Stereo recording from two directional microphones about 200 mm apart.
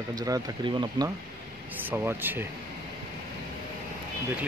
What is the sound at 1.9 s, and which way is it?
Speech, 10° right (ahead or behind).